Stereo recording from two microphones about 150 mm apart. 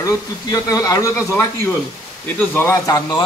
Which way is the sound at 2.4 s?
15° left (ahead or behind).